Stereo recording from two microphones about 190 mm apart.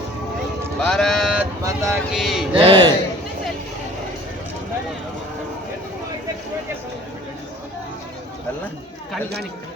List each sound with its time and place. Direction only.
0.8 s speech: centre (ahead or behind)
1.6 s speech: 15° right (ahead or behind)
2.1 s speech: centre (ahead or behind)
2.6 s speech: 25° right (ahead or behind)